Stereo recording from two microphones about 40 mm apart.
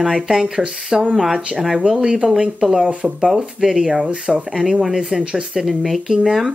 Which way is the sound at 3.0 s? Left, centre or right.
Right.